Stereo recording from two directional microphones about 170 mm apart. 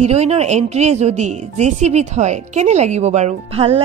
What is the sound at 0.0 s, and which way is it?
Speech, 40° right (ahead or behind).